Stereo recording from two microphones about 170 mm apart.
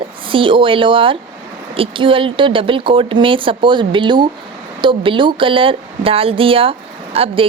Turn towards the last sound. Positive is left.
turn(degrees=-35)  # may be behind; listen again after turning